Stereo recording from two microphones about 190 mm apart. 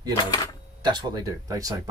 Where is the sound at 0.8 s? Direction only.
20° right (ahead or behind).